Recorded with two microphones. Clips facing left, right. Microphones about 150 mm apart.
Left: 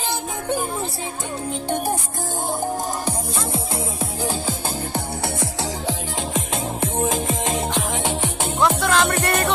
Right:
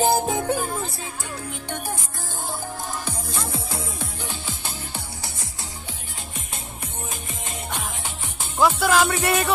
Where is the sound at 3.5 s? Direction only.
25° left (ahead or behind).